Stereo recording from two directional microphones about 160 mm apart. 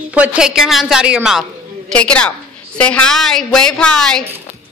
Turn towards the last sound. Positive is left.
turn(degrees=5)  # may be behind; listen again after turning